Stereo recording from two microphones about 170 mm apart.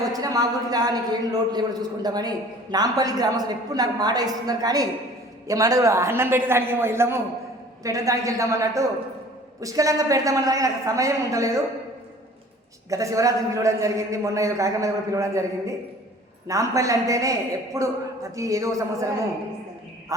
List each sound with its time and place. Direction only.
0.1 s a man's voice: 20° right (ahead or behind)
12.9 s a man's voice: 20° right (ahead or behind)